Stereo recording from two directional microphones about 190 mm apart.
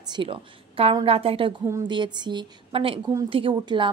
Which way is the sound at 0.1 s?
30° right (ahead or behind).